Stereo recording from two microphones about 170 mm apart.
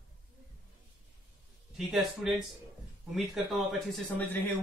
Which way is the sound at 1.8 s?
Centre (ahead or behind).